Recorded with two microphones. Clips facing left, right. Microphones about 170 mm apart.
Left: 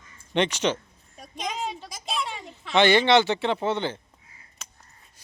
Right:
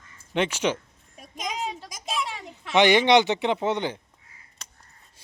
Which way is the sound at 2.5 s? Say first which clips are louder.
Right 1 dB; 15° right (ahead or behind).